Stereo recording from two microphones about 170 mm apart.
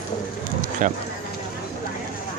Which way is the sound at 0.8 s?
50° right (ahead or behind).